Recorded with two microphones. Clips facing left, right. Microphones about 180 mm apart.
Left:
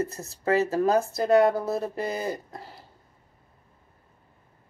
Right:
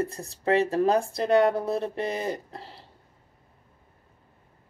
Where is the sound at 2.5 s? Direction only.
30° right (ahead or behind).